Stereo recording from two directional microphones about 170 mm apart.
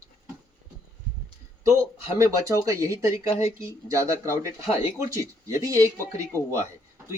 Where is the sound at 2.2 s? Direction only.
20° right (ahead or behind).